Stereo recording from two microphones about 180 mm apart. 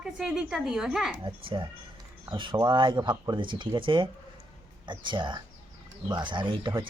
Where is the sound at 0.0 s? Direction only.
5° right (ahead or behind).